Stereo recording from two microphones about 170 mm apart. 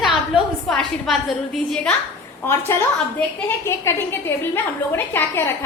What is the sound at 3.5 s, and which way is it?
A woman's voice, 15° left (ahead or behind).